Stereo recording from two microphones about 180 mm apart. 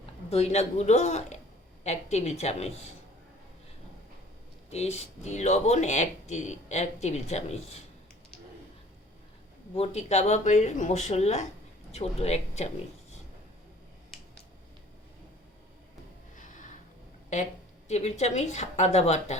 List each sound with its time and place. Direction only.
0.0 s speech: 35° left (ahead or behind)
4.7 s speech: 35° left (ahead or behind)
9.7 s speech: 35° left (ahead or behind)
16.3 s a sound: 45° left (ahead or behind)
17.8 s speech: 40° left (ahead or behind)